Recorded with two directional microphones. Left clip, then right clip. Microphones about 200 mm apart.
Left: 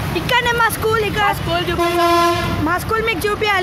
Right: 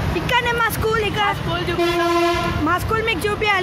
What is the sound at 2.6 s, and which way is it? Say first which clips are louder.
Speech: left 2 dB; 10° left (ahead or behind).